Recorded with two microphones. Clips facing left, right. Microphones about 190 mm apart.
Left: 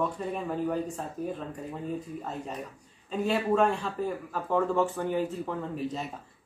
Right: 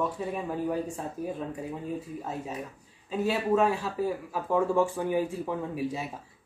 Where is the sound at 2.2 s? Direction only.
5° right (ahead or behind).